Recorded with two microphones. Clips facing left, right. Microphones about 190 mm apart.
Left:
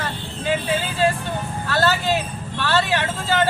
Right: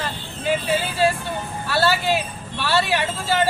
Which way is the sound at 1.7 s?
10° right (ahead or behind).